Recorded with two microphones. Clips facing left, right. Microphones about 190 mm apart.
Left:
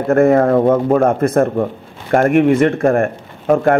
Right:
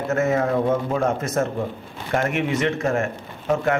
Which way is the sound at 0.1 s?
55° left (ahead or behind).